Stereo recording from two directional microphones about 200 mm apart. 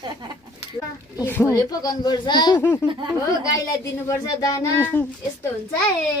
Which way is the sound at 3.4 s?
15° left (ahead or behind).